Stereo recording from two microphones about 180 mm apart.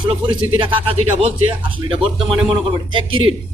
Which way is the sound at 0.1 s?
30° right (ahead or behind).